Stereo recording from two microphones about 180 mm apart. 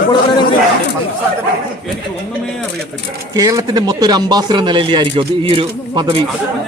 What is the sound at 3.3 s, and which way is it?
Speech, 20° right (ahead or behind).